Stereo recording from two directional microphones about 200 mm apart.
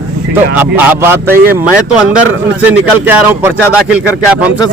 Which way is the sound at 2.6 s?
10° right (ahead or behind).